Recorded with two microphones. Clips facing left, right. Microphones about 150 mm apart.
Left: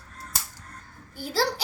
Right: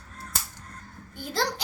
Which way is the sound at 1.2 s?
5° left (ahead or behind).